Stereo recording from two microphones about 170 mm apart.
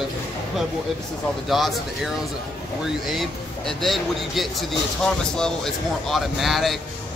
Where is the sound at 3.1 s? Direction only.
Centre (ahead or behind).